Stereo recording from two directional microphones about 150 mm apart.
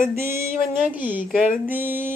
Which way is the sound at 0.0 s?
15° right (ahead or behind).